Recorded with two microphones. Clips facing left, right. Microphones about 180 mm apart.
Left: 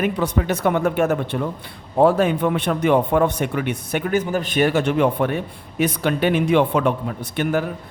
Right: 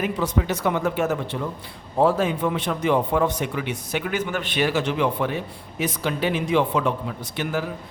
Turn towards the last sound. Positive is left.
turn(degrees=55)  # may be behind; listen again after turning